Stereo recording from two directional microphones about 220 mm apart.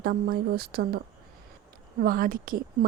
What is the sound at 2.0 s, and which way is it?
Speech, 40° right (ahead or behind).